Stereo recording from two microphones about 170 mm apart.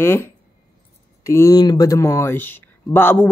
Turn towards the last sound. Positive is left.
turn(degrees=10)  # may be behind; listen again after turning